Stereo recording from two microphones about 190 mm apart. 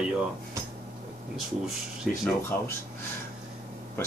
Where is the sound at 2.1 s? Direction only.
Centre (ahead or behind).